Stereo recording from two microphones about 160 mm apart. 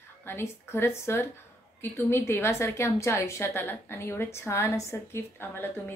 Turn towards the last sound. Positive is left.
turn(degrees=15)  # may be behind; listen again after turning